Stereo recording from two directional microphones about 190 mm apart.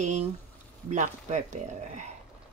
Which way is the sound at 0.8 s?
40° right (ahead or behind).